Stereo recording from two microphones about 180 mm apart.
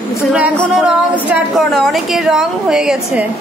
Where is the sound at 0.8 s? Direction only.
5° right (ahead or behind).